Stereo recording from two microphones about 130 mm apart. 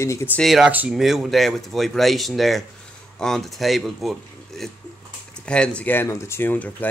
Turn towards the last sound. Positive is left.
turn(degrees=15)  # may be behind; listen again after turning